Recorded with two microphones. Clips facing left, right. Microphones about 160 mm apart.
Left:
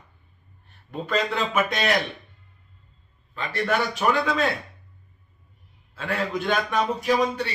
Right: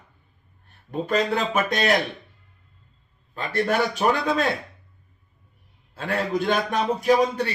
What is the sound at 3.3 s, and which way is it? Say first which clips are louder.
A man's voice: right 2 dB; 40° right (ahead or behind).